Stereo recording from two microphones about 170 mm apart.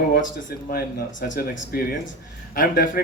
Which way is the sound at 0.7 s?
65° left (ahead or behind).